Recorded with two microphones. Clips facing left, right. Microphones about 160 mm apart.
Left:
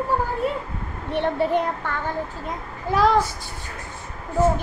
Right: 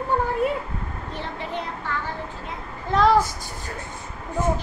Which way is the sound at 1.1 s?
55° left (ahead or behind).